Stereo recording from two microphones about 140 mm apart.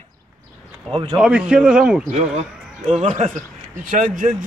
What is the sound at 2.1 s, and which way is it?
A man's voice, 60° right (ahead or behind).